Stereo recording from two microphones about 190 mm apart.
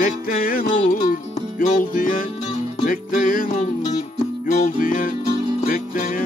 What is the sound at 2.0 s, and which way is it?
Music, 45° left (ahead or behind).